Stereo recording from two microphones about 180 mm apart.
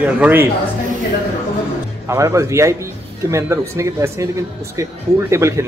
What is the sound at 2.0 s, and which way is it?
Speech, 15° right (ahead or behind).